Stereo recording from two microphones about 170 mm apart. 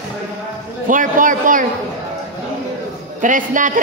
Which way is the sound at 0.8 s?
50° right (ahead or behind).